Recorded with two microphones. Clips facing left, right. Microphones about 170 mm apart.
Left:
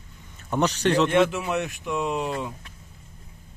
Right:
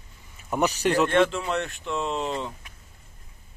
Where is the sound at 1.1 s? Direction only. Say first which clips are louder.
Left 1 dB; 15° left (ahead or behind).